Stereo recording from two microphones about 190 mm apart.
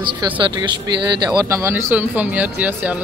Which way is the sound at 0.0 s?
25° right (ahead or behind).